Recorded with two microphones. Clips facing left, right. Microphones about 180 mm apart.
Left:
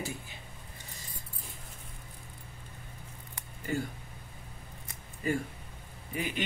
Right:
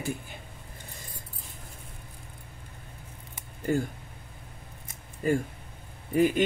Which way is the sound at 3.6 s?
45° right (ahead or behind).